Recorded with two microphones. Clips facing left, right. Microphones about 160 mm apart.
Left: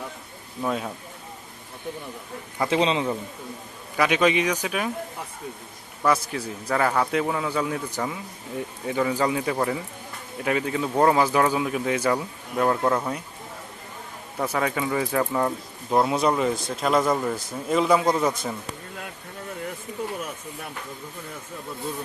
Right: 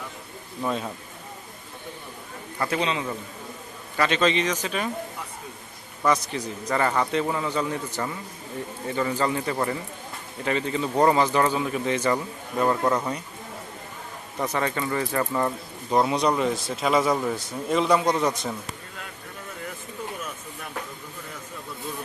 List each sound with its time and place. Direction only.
0.6 s speech: 5° left (ahead or behind)
2.6 s a man's voice: 25° left (ahead or behind)
3.9 s speech: 10° left (ahead or behind)
6.0 s speech: 5° left (ahead or behind)
14.3 s speech: 10° left (ahead or behind)